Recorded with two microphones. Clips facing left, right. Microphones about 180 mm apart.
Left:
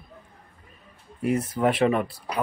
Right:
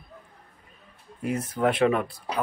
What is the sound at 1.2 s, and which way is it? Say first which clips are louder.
Speech: left 2 dB; 5° left (ahead or behind).